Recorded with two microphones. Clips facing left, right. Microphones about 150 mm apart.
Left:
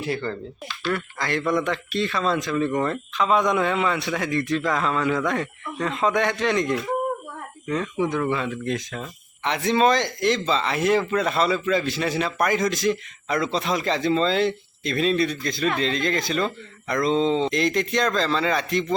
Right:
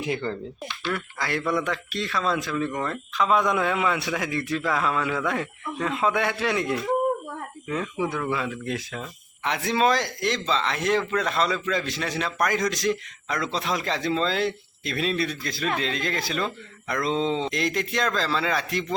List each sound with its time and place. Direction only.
0.0 s speech: 15° right (ahead or behind)
0.9 s speech: 5° right (ahead or behind)